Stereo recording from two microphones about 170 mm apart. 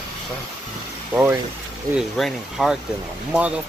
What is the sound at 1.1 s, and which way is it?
Speech, 15° right (ahead or behind).